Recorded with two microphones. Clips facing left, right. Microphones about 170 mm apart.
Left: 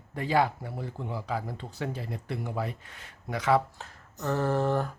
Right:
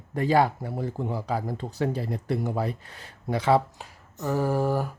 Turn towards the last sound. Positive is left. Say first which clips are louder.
# right 2 dB
turn(degrees=-10)  # may be behind; listen again after turning